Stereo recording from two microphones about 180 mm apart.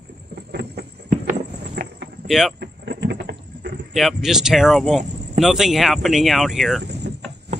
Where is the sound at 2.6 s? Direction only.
65° right (ahead or behind).